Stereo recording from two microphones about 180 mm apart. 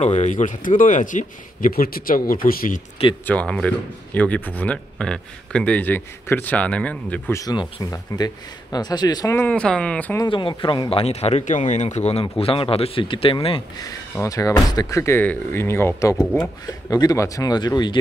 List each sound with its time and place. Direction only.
0.0 s speech: 40° left (ahead or behind)
3.3 s speech: 5° left (ahead or behind)
10.2 s speech: 25° left (ahead or behind)
13.8 s speech: 15° left (ahead or behind)